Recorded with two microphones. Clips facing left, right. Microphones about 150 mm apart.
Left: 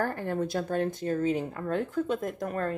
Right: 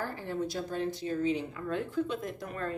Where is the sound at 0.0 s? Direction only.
55° left (ahead or behind).